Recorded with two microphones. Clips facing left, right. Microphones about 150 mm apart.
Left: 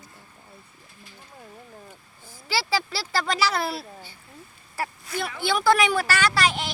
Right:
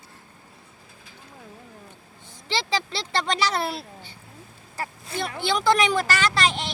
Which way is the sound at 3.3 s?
5° left (ahead or behind).